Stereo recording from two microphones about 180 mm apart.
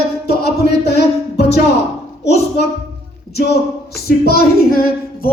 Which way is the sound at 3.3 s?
60° left (ahead or behind).